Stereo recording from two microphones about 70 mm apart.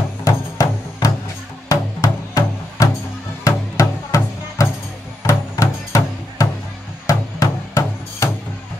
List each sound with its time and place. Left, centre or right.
0.2 s music: left
1.7 s music: left